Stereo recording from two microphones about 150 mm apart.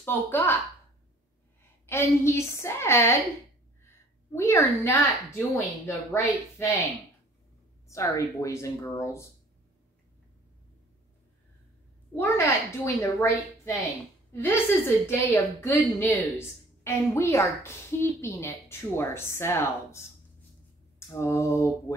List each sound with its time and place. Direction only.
0.0 s a woman's voice: 15° left (ahead or behind)
1.9 s a woman's voice: 15° left (ahead or behind)
3.8 s a sound: 20° left (ahead or behind)
5.9 s speech: 20° left (ahead or behind)
7.9 s speech: 20° left (ahead or behind)
12.2 s a woman's voice: 15° left (ahead or behind)
21.1 s a woman's voice: 20° left (ahead or behind)